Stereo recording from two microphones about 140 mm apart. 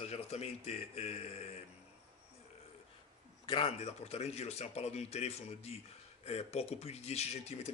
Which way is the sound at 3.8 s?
50° left (ahead or behind).